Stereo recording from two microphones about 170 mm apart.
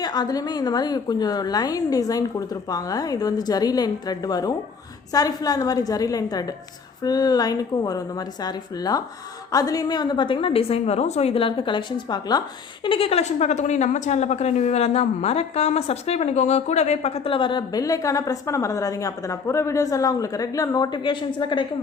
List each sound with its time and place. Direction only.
0.0 s a woman's voice: 25° left (ahead or behind)